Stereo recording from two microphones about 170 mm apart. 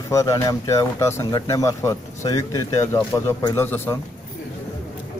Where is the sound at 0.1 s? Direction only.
20° left (ahead or behind).